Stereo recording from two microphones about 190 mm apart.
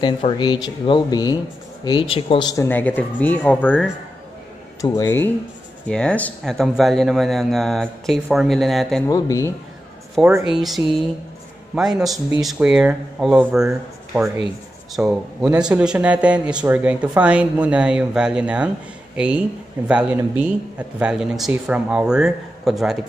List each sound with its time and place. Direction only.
0.0 s speech: 25° left (ahead or behind); by 3.8 s 10° left (ahead or behind)
4.8 s speech: 20° left (ahead or behind)
5.9 s speech: 5° left (ahead or behind)
9.0 s speech: 15° left (ahead or behind)
10.4 s speech: centre (ahead or behind)